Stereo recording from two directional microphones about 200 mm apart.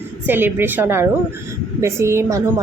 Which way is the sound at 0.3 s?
10° right (ahead or behind).